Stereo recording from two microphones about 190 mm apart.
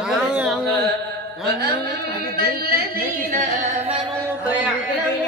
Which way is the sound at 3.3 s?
40° right (ahead or behind).